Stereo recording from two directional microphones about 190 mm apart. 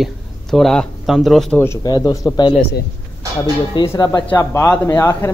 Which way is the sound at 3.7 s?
20° left (ahead or behind).